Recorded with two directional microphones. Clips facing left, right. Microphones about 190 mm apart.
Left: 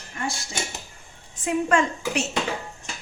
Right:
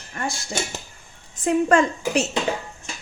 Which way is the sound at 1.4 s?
40° right (ahead or behind).